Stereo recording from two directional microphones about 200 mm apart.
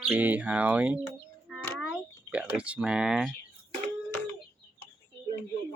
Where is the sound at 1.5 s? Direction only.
5° right (ahead or behind).